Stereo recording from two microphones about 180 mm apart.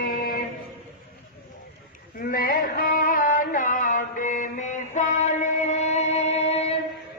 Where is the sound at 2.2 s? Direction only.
50° left (ahead or behind); by 6.8 s 35° left (ahead or behind).